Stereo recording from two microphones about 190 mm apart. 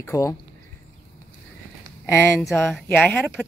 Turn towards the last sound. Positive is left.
turn(degrees=5)  # may be behind; listen again after turning